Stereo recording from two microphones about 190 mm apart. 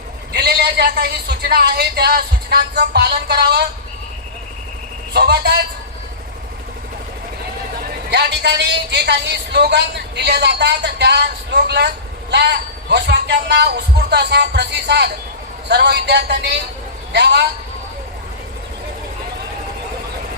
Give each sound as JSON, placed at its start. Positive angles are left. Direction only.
{"t": 0.3, "sound": "a man's voice", "side_deg": -60}
{"t": 5.1, "sound": "a man's voice", "side_deg": -55}
{"t": 7.8, "sound": "a man's voice", "side_deg": -60}